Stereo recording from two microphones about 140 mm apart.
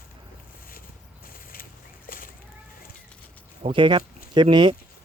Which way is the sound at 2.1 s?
85° left.